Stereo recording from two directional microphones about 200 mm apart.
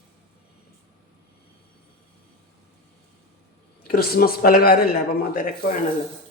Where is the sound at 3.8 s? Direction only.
50° left (ahead or behind).